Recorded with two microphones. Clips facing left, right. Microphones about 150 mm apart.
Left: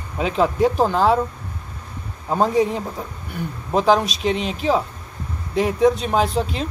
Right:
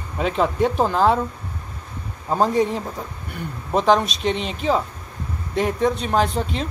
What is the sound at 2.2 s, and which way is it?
A man's voice, centre (ahead or behind).